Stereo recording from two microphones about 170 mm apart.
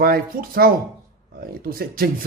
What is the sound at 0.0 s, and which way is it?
A man's voice, 60° right (ahead or behind).